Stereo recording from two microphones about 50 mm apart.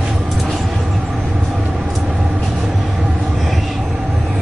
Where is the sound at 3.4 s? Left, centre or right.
Centre.